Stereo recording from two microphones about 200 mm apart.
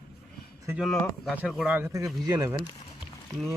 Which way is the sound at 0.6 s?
10° right (ahead or behind).